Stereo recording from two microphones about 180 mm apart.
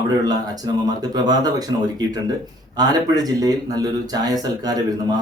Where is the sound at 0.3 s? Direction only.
20° right (ahead or behind).